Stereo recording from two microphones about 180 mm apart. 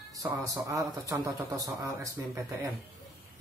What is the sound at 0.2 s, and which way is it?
Speech, 20° right (ahead or behind).